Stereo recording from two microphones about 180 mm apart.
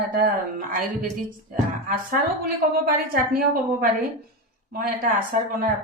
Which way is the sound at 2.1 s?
55° right (ahead or behind).